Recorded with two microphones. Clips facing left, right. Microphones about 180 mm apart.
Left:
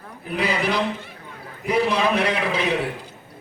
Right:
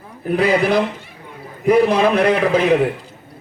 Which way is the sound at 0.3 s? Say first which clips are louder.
Right 7 dB; 55° right (ahead or behind).